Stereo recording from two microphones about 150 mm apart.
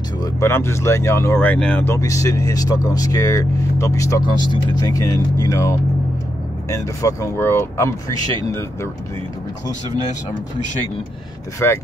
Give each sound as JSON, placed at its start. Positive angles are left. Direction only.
{"t": 0.2, "sound": "speech", "side_deg": 15}
{"t": 11.6, "sound": "speech", "side_deg": 15}